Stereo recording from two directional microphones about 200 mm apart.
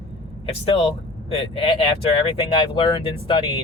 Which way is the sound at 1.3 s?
25° left (ahead or behind).